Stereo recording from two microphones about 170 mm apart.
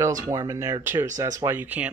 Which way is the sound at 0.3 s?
20° right (ahead or behind).